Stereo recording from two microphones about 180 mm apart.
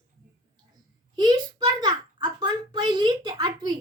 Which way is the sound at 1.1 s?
25° right (ahead or behind).